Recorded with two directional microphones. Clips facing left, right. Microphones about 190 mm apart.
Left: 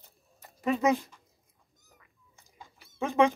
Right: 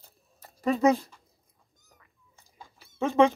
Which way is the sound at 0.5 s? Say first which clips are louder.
Right 3 dB; 40° right (ahead or behind).